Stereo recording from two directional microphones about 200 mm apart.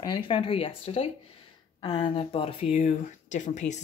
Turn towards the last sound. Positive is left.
turn(degrees=35)  # may be behind; listen again after turning